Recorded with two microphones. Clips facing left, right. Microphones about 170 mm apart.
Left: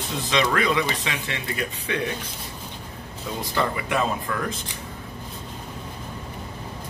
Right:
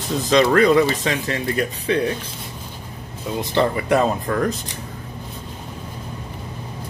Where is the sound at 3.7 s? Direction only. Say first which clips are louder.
Right 7 dB; 40° right (ahead or behind).